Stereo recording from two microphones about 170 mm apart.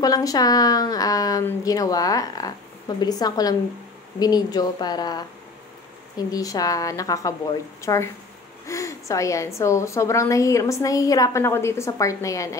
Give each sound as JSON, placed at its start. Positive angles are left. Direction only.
{"t": 0.0, "sound": "a woman's voice", "side_deg": 20}